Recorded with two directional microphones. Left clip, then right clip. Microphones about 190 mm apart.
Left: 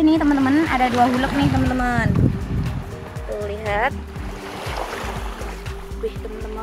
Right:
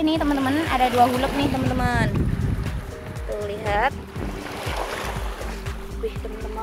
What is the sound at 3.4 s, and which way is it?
Music, 15° right (ahead or behind).